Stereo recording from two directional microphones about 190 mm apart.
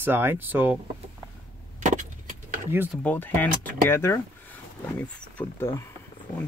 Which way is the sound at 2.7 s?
10° right (ahead or behind).